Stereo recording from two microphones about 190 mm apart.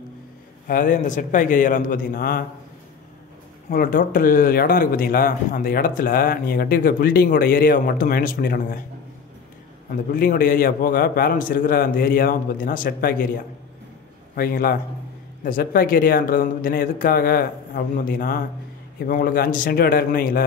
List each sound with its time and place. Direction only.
0.7 s speech: 45° left (ahead or behind)
3.7 s speech: 50° left (ahead or behind)
10.1 s speech: 50° left (ahead or behind)
14.3 s speech: 50° left (ahead or behind)